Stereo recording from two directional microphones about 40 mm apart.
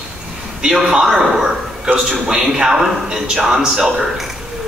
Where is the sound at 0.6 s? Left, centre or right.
Centre.